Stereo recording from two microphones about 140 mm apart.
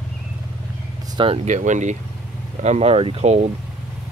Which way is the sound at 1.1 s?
40° right (ahead or behind).